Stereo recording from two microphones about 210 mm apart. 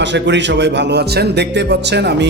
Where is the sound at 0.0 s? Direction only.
55° right (ahead or behind).